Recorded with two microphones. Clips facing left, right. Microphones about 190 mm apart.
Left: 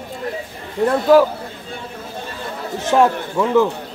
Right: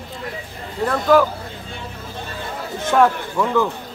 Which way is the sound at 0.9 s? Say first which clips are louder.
Left 3 dB; 30° left (ahead or behind).